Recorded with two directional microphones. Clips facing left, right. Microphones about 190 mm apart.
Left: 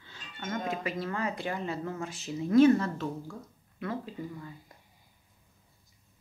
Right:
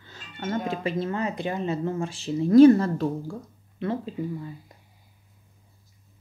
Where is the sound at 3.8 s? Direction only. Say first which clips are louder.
Right 7 dB; 25° right (ahead or behind).